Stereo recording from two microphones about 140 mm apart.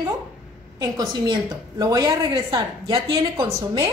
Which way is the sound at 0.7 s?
30° right (ahead or behind).